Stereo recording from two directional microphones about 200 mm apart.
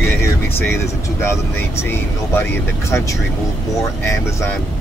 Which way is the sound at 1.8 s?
10° left (ahead or behind).